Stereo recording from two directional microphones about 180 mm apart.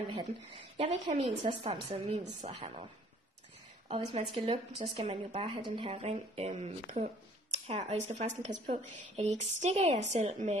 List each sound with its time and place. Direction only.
0.7 s a woman's voice: 35° right (ahead or behind)
3.9 s speech: 30° right (ahead or behind)